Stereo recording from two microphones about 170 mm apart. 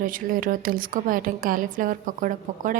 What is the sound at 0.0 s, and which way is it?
A woman's voice, 55° right (ahead or behind).